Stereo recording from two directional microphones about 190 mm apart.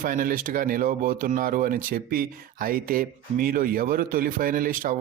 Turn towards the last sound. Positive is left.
turn(degrees=-45)  # may be behind; listen again after turning